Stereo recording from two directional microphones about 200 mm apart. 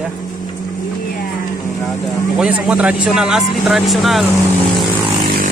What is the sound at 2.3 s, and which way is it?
Speech, 5° right (ahead or behind).